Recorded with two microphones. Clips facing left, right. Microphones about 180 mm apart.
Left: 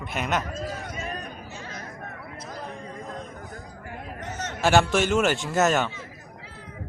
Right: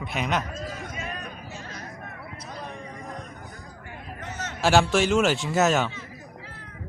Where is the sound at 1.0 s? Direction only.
35° left (ahead or behind).